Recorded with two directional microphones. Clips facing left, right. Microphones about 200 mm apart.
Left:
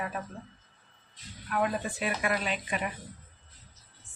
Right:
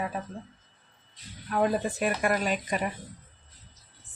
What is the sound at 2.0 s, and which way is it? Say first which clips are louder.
Speech: right 2 dB; 45° right (ahead or behind).